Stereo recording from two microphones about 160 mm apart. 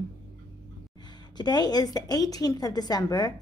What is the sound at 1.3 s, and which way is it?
A woman's voice, 25° left (ahead or behind).